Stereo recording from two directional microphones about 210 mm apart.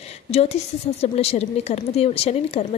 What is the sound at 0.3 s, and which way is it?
A woman's voice, 30° left (ahead or behind).